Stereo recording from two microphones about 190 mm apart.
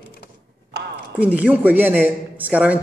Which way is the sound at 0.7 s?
65° right (ahead or behind).